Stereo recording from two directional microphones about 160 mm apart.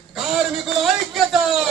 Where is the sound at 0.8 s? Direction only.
Centre (ahead or behind).